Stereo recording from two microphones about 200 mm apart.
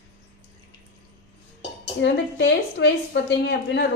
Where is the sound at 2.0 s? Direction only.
60° left (ahead or behind).